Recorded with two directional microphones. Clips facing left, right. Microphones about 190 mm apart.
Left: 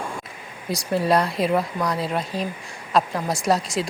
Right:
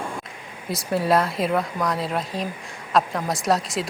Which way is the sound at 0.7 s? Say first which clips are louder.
Even; centre (ahead or behind).